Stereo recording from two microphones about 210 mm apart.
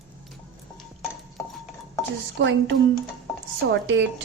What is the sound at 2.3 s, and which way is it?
A woman's voice, 60° right (ahead or behind).